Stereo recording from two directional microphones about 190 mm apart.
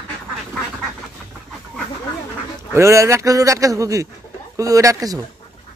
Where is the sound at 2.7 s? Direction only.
15° right (ahead or behind).